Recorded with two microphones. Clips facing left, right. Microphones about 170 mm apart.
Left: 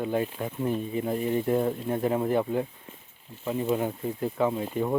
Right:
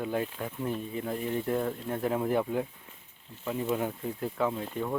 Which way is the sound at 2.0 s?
Centre (ahead or behind).